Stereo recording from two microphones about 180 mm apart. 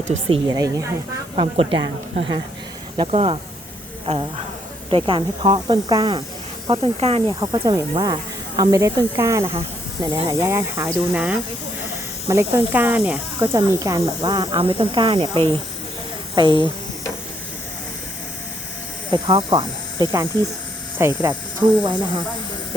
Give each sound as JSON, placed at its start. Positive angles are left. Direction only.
{"t": 0.4, "sound": "speech", "side_deg": -20}
{"t": 3.0, "sound": "speech", "side_deg": -30}
{"t": 12.5, "sound": "speech", "side_deg": -10}
{"t": 13.6, "sound": "speech", "side_deg": -20}
{"t": 19.1, "sound": "speech", "side_deg": -25}
{"t": 21.0, "sound": "speech", "side_deg": -15}
{"t": 21.6, "sound": "speech", "side_deg": -25}